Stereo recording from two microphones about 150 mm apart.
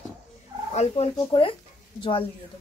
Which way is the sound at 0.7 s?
45° left (ahead or behind).